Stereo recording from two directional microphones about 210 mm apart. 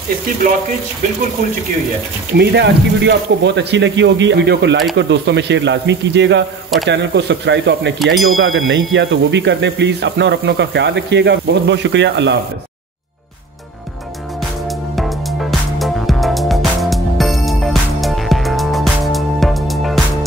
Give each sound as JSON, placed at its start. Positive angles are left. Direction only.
{"t": 2.3, "sound": "speech", "side_deg": -55}
{"t": 8.0, "sound": "a sound", "side_deg": 0}
{"t": 8.4, "sound": "speech", "side_deg": -70}
{"t": 14.7, "sound": "music", "side_deg": 0}